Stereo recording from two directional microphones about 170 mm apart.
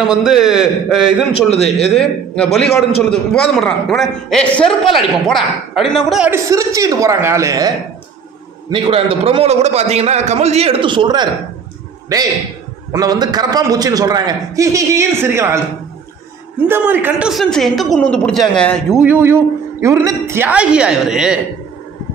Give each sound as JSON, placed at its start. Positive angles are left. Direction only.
{"t": 0.0, "sound": "a man's voice", "side_deg": -5}
{"t": 1.3, "sound": "a man's voice", "side_deg": 35}
{"t": 2.0, "sound": "a man's voice", "side_deg": 5}
{"t": 6.3, "sound": "a man's voice", "side_deg": -20}
{"t": 8.6, "sound": "a man's voice", "side_deg": -30}
{"t": 16.6, "sound": "a man's voice", "side_deg": -10}
{"t": 19.0, "sound": "a woman's voice", "side_deg": -10}